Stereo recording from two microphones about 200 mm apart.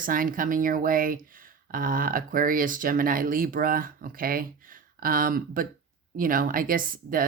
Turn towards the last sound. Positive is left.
turn(degrees=-45)  # may be behind; listen again after turning